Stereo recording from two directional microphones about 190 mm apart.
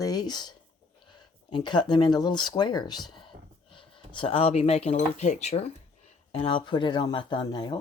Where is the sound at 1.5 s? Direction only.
25° left (ahead or behind).